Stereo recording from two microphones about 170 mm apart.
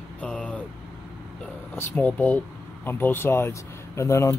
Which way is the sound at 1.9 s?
10° left (ahead or behind).